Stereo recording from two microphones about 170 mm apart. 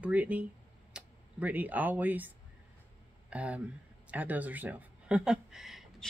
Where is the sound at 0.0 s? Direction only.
10° right (ahead or behind).